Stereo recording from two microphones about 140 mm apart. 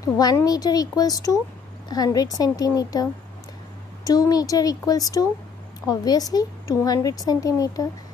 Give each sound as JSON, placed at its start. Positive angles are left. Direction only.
{"t": 0.0, "sound": "a woman's voice", "side_deg": 25}